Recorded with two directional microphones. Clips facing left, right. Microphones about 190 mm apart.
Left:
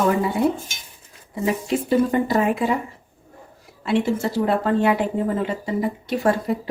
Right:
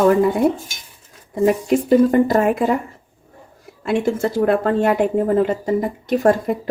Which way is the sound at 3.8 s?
50° right (ahead or behind).